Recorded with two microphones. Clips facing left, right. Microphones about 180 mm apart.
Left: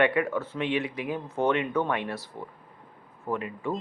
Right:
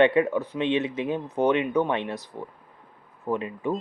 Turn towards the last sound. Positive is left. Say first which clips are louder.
# right 3 dB
turn(degrees=-20)  # may be behind; listen again after turning